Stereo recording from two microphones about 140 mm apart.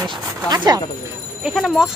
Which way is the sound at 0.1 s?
30° right (ahead or behind).